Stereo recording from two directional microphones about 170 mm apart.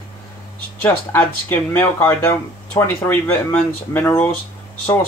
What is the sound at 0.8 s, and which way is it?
Speech, 10° left (ahead or behind).